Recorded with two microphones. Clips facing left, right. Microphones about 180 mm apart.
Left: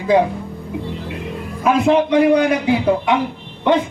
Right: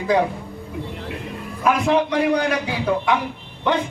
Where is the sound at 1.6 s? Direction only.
25° left (ahead or behind).